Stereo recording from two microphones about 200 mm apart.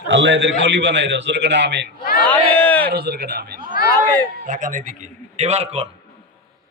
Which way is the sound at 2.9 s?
55° right (ahead or behind).